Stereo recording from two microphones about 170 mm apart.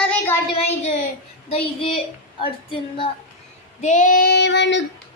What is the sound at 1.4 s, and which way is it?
Speech, 35° left (ahead or behind).